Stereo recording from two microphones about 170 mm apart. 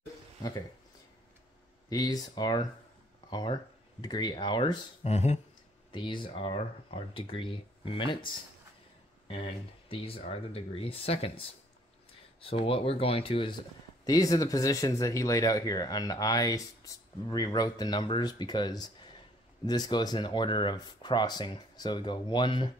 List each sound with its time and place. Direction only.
0.4 s speech: 20° left (ahead or behind)
1.9 s speech: 25° left (ahead or behind)
5.0 s speech: 40° left (ahead or behind)
5.9 s speech: 30° left (ahead or behind)
9.8 s speech: 35° left (ahead or behind)